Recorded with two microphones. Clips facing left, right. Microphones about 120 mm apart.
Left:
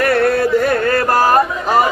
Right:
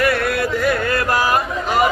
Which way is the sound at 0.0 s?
35° left (ahead or behind).